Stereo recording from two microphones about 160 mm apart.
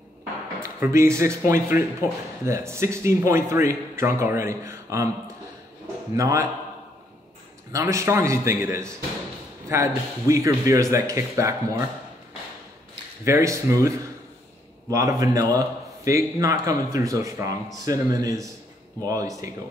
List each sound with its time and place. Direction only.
0.6 s speech: 15° right (ahead or behind)
6.1 s speech: 20° right (ahead or behind)
7.7 s speech: 20° right (ahead or behind)
13.2 s speech: 20° right (ahead or behind)